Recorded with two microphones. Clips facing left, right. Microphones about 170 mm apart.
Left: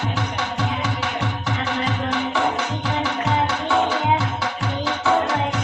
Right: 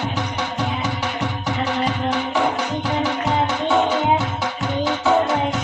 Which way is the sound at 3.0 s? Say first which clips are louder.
Right 1 dB; 15° right (ahead or behind).